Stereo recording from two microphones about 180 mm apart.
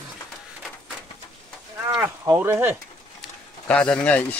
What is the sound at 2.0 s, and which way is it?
Speech, 15° right (ahead or behind).